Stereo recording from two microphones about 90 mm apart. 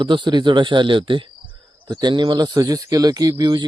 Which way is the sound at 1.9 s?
55° right (ahead or behind).